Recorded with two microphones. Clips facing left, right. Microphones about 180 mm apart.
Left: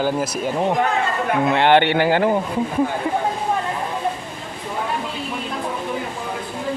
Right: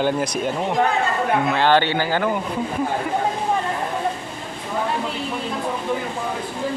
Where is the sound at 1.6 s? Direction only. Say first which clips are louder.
Left 4 dB; 20° left (ahead or behind).